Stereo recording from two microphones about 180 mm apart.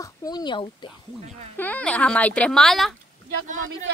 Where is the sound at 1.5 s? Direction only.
10° left (ahead or behind).